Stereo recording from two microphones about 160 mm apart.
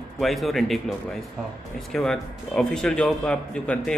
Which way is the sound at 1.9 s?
Centre (ahead or behind).